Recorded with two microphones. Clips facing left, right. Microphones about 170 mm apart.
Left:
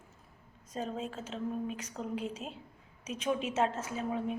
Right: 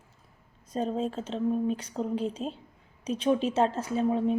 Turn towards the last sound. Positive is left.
turn(degrees=-30)  # may be behind; listen again after turning